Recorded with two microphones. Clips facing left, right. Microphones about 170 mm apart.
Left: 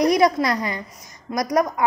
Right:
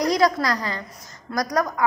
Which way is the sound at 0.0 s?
20° left (ahead or behind).